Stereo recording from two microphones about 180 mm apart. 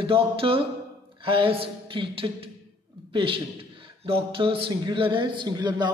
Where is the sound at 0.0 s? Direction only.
30° right (ahead or behind).